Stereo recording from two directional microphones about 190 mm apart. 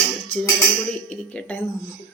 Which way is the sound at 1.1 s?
5° left (ahead or behind).